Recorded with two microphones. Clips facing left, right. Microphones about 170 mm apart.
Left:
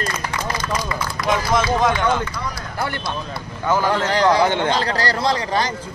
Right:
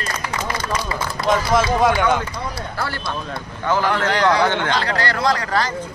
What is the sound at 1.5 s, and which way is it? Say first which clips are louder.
Speech: right 1 dB; 5° right (ahead or behind).